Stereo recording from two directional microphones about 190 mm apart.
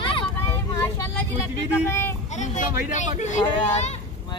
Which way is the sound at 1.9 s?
15° left (ahead or behind).